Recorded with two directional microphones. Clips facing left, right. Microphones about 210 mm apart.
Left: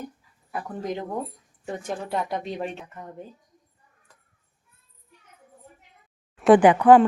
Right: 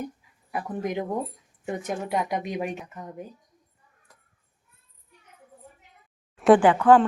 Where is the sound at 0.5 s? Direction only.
15° right (ahead or behind).